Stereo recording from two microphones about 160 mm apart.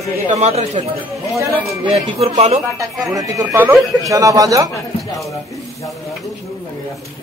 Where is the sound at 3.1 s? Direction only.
20° right (ahead or behind).